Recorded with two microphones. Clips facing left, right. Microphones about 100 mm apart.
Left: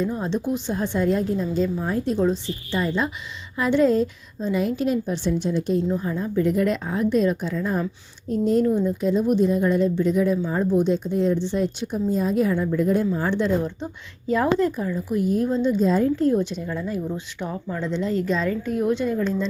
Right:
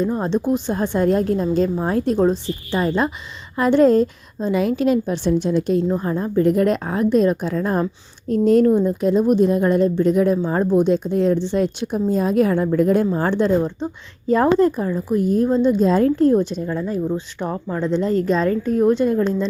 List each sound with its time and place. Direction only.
0.0 s a woman's voice: 40° right (ahead or behind); by 2.1 s 65° right (ahead or behind)
2.1 s a woman's voice: 45° right (ahead or behind); by 5.8 s 75° right (ahead or behind)
5.9 s a woman's voice: 45° right (ahead or behind)
8.3 s speech: 70° right (ahead or behind)
13.3 s a woman's voice: 45° right (ahead or behind)
13.7 s speech: 25° right (ahead or behind)
14.3 s a woman's voice: 40° right (ahead or behind)
15.8 s speech: 75° right (ahead or behind)
16.1 s a woman's voice: 45° right (ahead or behind)
16.6 s speech: 25° right (ahead or behind)
17.9 s a woman's voice: 45° right (ahead or behind)